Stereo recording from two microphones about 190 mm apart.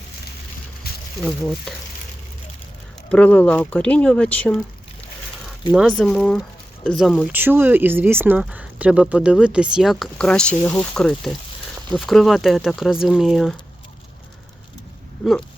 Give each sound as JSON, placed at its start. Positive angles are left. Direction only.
{"t": 0.9, "sound": "a sound", "side_deg": 55}
{"t": 1.2, "sound": "speech", "side_deg": 5}
{"t": 3.1, "sound": "speech", "side_deg": 5}
{"t": 6.0, "sound": "speech", "side_deg": 0}
{"t": 7.3, "sound": "speech", "side_deg": -10}
{"t": 10.9, "sound": "speech", "side_deg": 0}
{"t": 15.2, "sound": "speech", "side_deg": 0}